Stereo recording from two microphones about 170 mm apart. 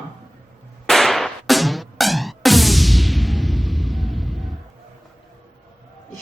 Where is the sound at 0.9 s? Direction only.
Centre (ahead or behind).